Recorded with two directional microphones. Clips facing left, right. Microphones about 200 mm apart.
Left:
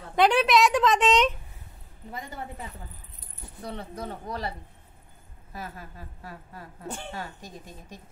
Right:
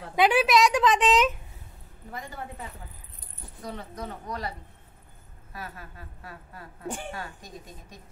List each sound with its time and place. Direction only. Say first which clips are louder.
0.1 s a woman's voice: even; 5° right (ahead or behind)
3.6 s a woman's voice: left 1 dB; 30° left (ahead or behind)